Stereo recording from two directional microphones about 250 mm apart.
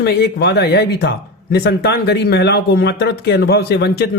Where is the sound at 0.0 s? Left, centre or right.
Left.